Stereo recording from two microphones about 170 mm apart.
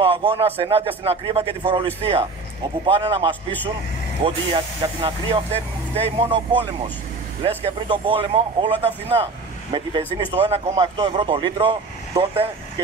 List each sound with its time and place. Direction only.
0.0 s speech: 35° right (ahead or behind)
7.4 s speech: 30° right (ahead or behind)